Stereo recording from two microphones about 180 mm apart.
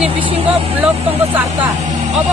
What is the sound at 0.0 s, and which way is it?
Speech, 35° right (ahead or behind).